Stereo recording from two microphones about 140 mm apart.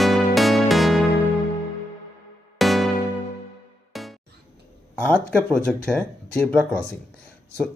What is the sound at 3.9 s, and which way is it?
Music, centre (ahead or behind).